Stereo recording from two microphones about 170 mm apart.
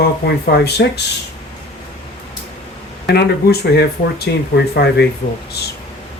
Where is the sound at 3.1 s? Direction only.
70° left (ahead or behind).